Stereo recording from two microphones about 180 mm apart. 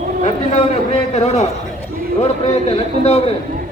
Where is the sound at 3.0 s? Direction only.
35° left (ahead or behind).